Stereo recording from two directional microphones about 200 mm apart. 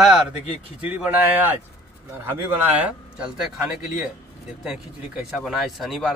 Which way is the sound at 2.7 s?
5° right (ahead or behind).